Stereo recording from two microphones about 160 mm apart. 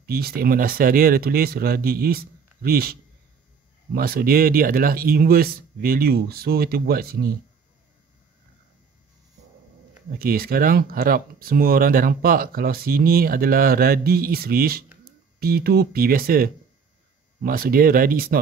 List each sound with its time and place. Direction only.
0.0 s speech: 70° right (ahead or behind)
10.1 s speech: 70° right (ahead or behind)